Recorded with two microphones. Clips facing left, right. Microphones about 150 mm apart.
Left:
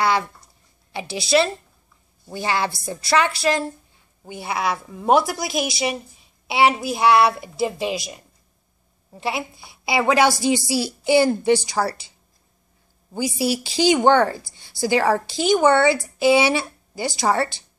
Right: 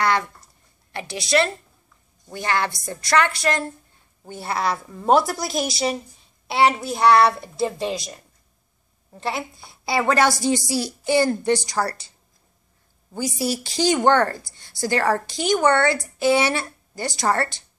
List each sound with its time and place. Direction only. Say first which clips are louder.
0.0 s a sound: left 1 dB; 5° left (ahead or behind)
1.1 s a woman's voice: left 2 dB; 5° left (ahead or behind)
13.1 s a woman's voice: left 2 dB; 5° left (ahead or behind)
15.2 s speech: left 3 dB; 25° left (ahead or behind)
15.5 s a woman's voice: left 2 dB; 5° left (ahead or behind)